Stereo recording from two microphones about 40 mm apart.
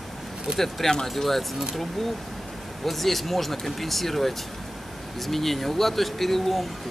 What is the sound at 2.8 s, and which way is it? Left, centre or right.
Speech, centre.